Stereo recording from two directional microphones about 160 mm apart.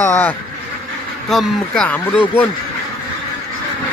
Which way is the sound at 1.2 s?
5° left (ahead or behind).